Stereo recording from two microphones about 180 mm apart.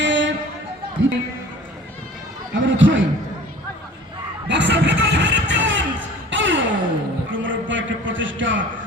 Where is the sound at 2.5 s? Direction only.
90° right.